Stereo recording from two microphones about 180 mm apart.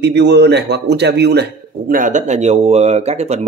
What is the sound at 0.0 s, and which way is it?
Speech, 70° right (ahead or behind).